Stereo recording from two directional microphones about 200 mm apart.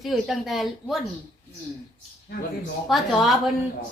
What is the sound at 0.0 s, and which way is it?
A woman's voice, centre (ahead or behind).